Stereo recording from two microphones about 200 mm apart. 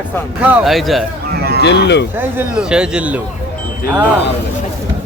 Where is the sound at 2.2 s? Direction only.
10° right (ahead or behind).